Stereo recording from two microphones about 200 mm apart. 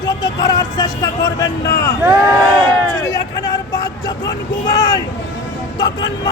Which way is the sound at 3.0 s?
20° left (ahead or behind).